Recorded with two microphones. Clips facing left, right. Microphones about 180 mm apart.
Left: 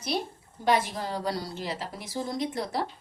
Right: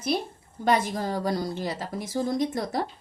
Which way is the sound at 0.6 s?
45° right (ahead or behind).